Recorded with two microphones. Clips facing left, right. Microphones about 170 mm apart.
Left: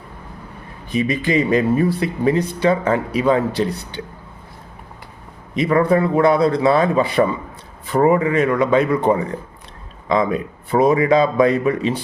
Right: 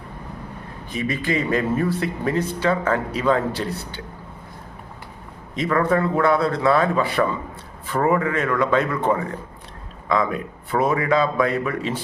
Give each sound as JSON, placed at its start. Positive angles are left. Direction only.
{"t": 0.9, "sound": "a man's voice", "side_deg": 15}
{"t": 5.5, "sound": "a man's voice", "side_deg": 15}